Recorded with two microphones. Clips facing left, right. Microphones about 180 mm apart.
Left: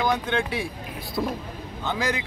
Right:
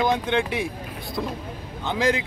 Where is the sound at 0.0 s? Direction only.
20° right (ahead or behind).